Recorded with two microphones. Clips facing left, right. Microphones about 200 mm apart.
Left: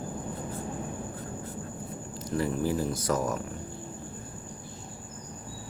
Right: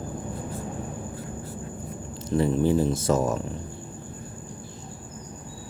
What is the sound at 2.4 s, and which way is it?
Speech, 25° right (ahead or behind).